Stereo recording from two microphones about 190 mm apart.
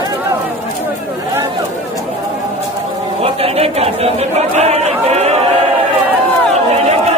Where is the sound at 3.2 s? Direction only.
30° right (ahead or behind).